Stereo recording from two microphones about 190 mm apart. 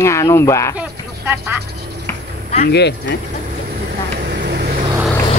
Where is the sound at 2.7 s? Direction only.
65° left (ahead or behind).